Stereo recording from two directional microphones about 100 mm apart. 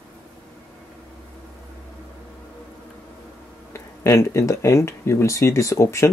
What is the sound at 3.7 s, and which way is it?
Speech, 25° left (ahead or behind).